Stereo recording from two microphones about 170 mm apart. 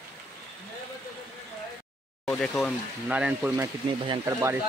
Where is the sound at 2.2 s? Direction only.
5° left (ahead or behind).